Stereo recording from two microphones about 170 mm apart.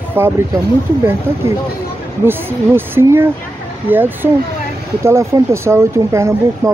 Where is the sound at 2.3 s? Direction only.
10° right (ahead or behind).